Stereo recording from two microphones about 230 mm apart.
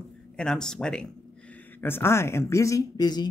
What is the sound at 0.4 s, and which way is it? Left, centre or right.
Speech, centre.